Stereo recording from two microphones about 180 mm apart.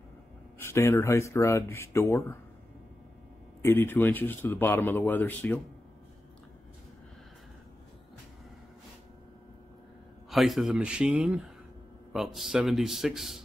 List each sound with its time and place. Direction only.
0.6 s speech: 15° left (ahead or behind)
3.6 s speech: 10° left (ahead or behind)
10.3 s speech: centre (ahead or behind)